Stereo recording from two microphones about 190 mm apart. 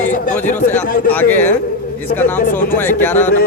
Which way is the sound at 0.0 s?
40° left (ahead or behind).